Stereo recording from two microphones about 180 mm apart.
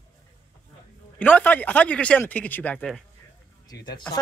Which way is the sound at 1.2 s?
10° left (ahead or behind).